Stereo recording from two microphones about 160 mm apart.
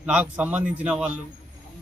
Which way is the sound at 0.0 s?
10° right (ahead or behind).